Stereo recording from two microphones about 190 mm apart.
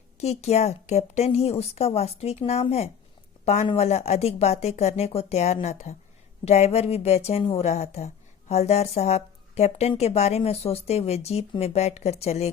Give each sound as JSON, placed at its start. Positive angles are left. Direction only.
{"t": 0.2, "sound": "speech", "side_deg": 35}